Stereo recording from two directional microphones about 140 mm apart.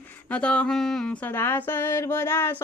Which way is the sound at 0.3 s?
10° left (ahead or behind).